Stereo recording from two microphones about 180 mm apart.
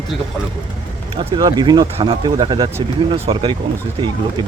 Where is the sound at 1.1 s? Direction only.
25° right (ahead or behind).